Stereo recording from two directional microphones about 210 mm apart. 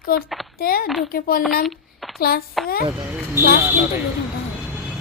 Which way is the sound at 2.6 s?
45° left (ahead or behind).